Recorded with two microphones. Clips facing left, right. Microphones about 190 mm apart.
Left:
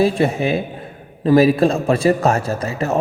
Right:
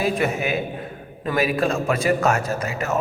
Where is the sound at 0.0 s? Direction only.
35° left (ahead or behind).